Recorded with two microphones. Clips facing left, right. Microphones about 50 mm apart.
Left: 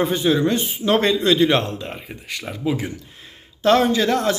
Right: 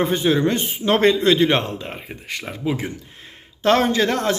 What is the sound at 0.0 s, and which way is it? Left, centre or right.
A man's voice, right.